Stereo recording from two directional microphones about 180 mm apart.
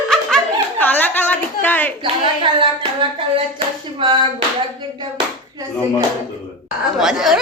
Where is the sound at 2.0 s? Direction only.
30° right (ahead or behind).